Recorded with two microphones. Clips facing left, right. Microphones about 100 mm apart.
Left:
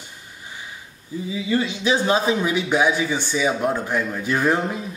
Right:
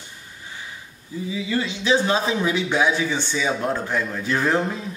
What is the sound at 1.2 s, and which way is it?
Speech, 20° left (ahead or behind).